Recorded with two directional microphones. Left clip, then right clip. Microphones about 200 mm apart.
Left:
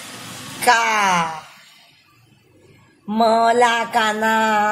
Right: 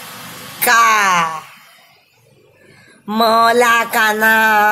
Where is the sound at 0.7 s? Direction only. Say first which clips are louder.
Right 4 dB; 15° right (ahead or behind).